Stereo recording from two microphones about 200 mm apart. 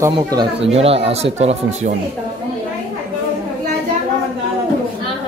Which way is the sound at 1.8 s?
45° right (ahead or behind).